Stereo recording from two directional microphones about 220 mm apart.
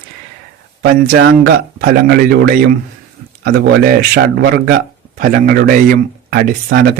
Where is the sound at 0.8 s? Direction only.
45° right (ahead or behind).